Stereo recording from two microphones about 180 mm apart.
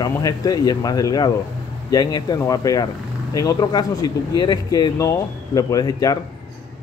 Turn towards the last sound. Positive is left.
turn(degrees=20)  # may be behind; listen again after turning